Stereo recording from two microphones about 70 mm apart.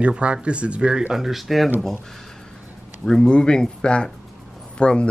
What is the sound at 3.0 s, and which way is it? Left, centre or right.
Speech, centre.